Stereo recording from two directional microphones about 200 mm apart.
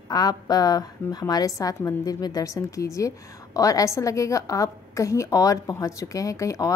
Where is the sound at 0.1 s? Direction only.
20° left (ahead or behind).